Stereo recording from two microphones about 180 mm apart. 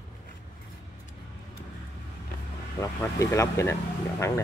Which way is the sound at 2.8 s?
15° left (ahead or behind).